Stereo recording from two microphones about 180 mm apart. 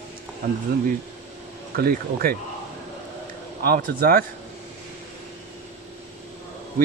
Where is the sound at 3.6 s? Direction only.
55° right (ahead or behind).